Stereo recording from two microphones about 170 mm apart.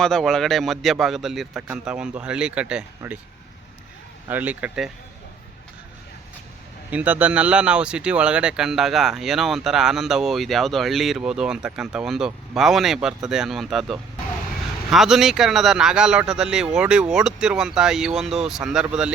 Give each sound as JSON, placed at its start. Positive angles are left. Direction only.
{"t": 0.0, "sound": "speech", "side_deg": 0}
{"t": 4.3, "sound": "speech", "side_deg": -10}
{"t": 6.9, "sound": "speech", "side_deg": -10}